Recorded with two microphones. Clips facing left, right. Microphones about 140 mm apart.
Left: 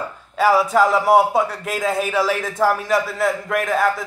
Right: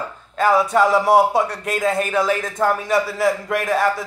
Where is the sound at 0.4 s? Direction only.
5° left (ahead or behind).